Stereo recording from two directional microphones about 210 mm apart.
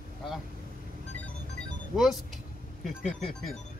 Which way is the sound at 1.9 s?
Centre (ahead or behind).